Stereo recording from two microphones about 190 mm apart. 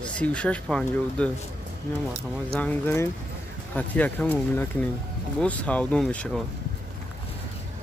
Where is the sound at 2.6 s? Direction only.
10° left (ahead or behind).